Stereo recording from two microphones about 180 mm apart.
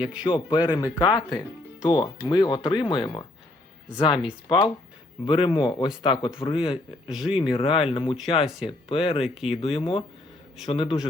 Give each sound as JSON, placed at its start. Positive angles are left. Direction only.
{"t": 0.3, "sound": "speech", "side_deg": 25}
{"t": 9.2, "sound": "speech", "side_deg": 0}
{"t": 9.5, "sound": "speech", "side_deg": 30}